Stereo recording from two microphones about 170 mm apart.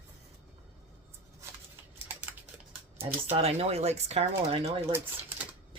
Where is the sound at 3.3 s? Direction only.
40° right (ahead or behind).